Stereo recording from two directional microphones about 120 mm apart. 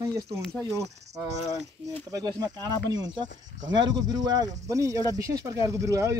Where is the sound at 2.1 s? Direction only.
35° right (ahead or behind).